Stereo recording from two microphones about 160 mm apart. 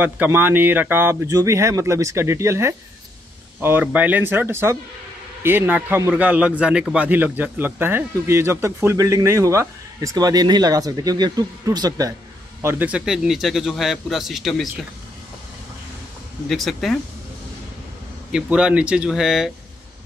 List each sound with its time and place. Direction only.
0.0 s a man's voice: 10° right (ahead or behind)
12.6 s speech: 10° right (ahead or behind)
16.4 s speech: centre (ahead or behind)
18.3 s speech: 5° right (ahead or behind)